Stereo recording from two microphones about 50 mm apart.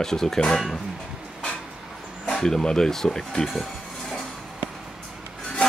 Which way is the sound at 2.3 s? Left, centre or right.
Centre.